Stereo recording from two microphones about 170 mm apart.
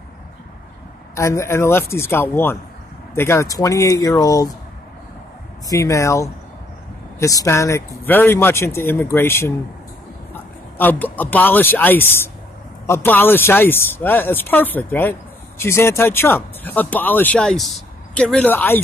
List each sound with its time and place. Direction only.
1.1 s speech: 15° left (ahead or behind)
5.7 s a man's voice: 20° left (ahead or behind)